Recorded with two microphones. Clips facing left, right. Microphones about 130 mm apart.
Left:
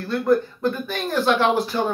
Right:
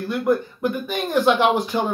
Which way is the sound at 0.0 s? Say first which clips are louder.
Left 1 dB; 15° right (ahead or behind).